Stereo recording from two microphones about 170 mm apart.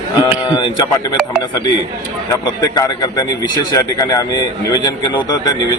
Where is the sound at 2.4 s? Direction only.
25° left (ahead or behind).